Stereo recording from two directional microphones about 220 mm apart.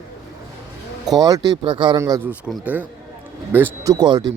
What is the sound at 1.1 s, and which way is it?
Speech, 15° right (ahead or behind).